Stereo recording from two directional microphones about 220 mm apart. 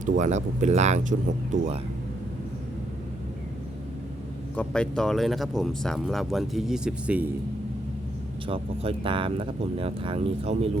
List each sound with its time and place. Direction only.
0.0 s speech: 35° right (ahead or behind)
4.5 s speech: 5° left (ahead or behind)
8.4 s speech: 25° right (ahead or behind)